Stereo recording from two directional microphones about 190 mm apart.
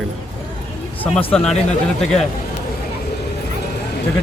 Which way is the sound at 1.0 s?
10° left (ahead or behind).